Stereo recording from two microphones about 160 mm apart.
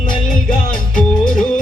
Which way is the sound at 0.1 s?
55° left (ahead or behind).